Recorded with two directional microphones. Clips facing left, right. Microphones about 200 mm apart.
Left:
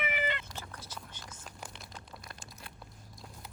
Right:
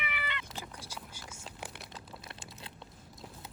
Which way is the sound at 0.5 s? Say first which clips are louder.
Right 1 dB; 15° right (ahead or behind).